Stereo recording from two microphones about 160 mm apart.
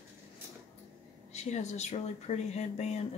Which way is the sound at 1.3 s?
45° left (ahead or behind).